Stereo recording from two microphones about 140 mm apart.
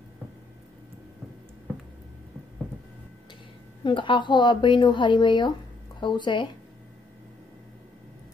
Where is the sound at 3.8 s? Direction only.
35° left (ahead or behind).